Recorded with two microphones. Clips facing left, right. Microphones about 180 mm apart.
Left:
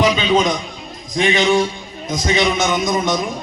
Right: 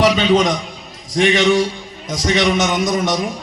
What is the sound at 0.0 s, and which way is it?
A man's voice, 70° right (ahead or behind).